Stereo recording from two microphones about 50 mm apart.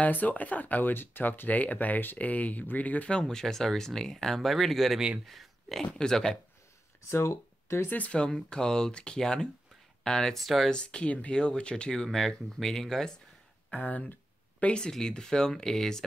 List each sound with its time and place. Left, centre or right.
0.0 s speech: left
3.1 s speech: centre
7.1 s speech: left
8.1 s speech: centre
10.4 s speech: centre
10.7 s speech: centre
13.7 s speech: left
14.6 s speech: centre